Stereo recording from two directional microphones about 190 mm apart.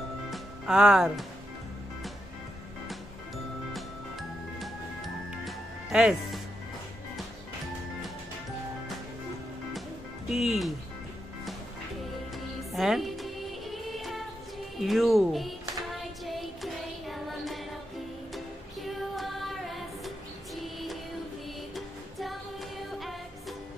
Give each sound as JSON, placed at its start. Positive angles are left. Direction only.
{"t": 0.3, "sound": "music", "side_deg": -5}
{"t": 3.7, "sound": "music", "side_deg": 0}
{"t": 10.3, "sound": "speech", "side_deg": 0}
{"t": 12.7, "sound": "music", "side_deg": 0}
{"t": 14.8, "sound": "speech", "side_deg": 0}
{"t": 15.9, "sound": "music", "side_deg": 0}
{"t": 18.9, "sound": "music", "side_deg": 0}